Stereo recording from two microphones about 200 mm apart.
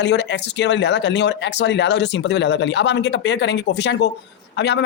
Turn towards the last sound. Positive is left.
turn(degrees=60)  # may be behind; listen again after turning